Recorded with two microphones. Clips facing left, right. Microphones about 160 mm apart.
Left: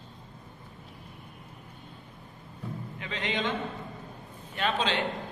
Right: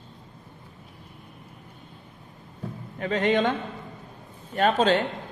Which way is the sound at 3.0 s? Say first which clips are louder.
Right 11 dB; 45° right (ahead or behind).